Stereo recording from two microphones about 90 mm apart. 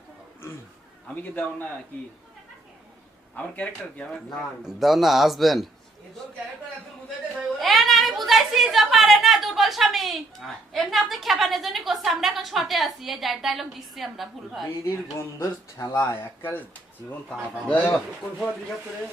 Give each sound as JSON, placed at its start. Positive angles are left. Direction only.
{"t": 1.0, "sound": "speech", "side_deg": 15}
{"t": 3.3, "sound": "speech", "side_deg": 15}
{"t": 4.6, "sound": "a man's voice", "side_deg": 0}
{"t": 7.3, "sound": "a woman's voice", "side_deg": 0}
{"t": 15.4, "sound": "speech", "side_deg": 40}
{"t": 17.9, "sound": "speech", "side_deg": 10}